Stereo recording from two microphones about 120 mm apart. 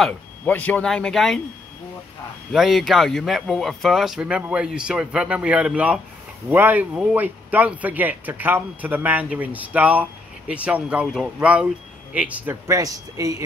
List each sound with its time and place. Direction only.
0.0 s speech: 10° left (ahead or behind)
2.5 s speech: centre (ahead or behind)
12.6 s speech: 30° right (ahead or behind)